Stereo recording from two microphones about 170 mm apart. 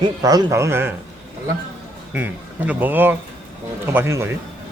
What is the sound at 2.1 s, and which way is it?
A man's voice, 10° right (ahead or behind).